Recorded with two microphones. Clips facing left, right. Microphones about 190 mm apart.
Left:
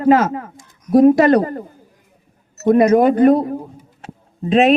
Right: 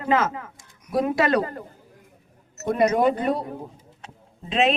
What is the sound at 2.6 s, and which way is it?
Speech, 50° left (ahead or behind).